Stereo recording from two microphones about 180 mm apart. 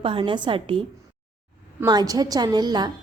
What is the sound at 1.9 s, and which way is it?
Speech, 20° right (ahead or behind).